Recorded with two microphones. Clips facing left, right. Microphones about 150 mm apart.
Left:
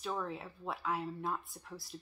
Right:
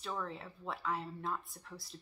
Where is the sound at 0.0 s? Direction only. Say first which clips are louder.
Left 2 dB; 5° left (ahead or behind).